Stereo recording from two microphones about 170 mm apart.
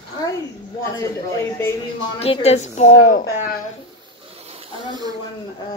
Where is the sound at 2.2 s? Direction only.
35° left (ahead or behind); by 3.3 s 50° left (ahead or behind).